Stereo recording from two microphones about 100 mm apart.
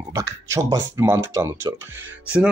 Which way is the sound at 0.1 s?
30° right (ahead or behind).